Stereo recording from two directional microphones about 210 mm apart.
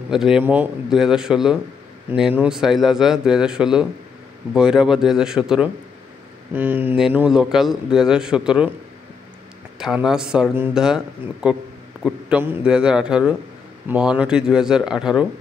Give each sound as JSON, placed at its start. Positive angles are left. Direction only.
{"t": 0.1, "sound": "a man's voice", "side_deg": 0}
{"t": 9.8, "sound": "a man's voice", "side_deg": -5}
{"t": 12.0, "sound": "a man's voice", "side_deg": -5}